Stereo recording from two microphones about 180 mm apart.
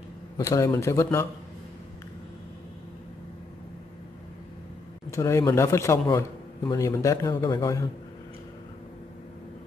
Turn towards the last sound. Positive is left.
turn(degrees=20)  # may be behind; listen again after turning